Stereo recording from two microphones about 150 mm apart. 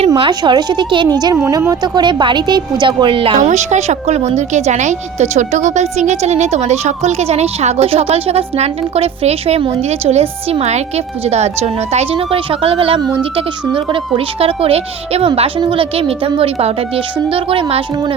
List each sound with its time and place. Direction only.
0.2 s a woman's voice: 30° right (ahead or behind)
3.3 s speech: 50° right (ahead or behind)